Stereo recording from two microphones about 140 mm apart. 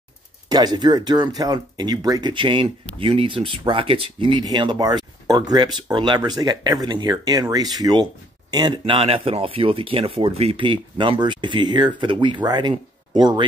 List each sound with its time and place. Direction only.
0.5 s speech: 30° right (ahead or behind)